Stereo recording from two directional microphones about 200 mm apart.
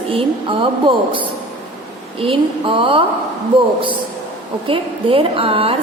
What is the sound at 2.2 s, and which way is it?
Speech, 25° right (ahead or behind).